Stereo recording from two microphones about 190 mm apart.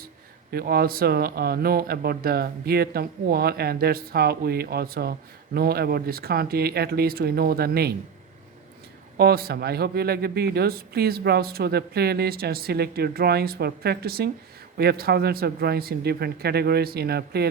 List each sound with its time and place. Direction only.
0.5 s speech: 55° right (ahead or behind)
9.1 s speech: 55° right (ahead or behind)